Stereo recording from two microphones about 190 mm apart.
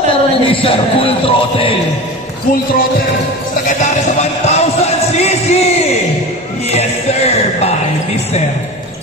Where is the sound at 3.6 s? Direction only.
35° left (ahead or behind).